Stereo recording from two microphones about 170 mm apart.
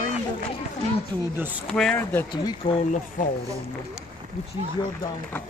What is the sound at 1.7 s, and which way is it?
Speech, 5° left (ahead or behind).